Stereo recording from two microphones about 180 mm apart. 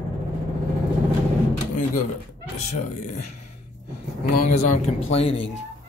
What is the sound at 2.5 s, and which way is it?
Speech, 40° left (ahead or behind).